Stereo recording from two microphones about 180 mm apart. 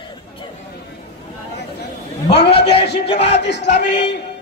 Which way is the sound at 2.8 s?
70° left (ahead or behind).